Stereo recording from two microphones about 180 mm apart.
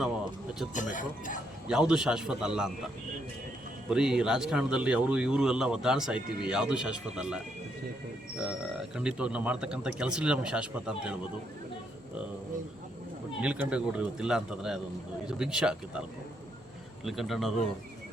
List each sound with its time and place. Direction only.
0.7 s speech: 45° left (ahead or behind)
1.6 s speech: 5° right (ahead or behind)
3.8 s speech: 5° right (ahead or behind)
8.4 s speech: 5° right (ahead or behind)
13.4 s speech: 5° right (ahead or behind)